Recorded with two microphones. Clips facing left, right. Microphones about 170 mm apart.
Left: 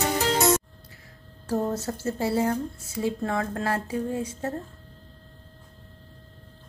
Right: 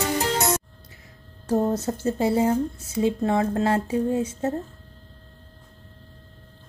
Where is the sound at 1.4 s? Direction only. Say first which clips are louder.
Right 4 dB; 20° right (ahead or behind).